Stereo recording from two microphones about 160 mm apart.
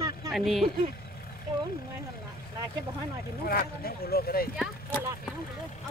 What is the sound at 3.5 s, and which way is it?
Speech, 70° left (ahead or behind).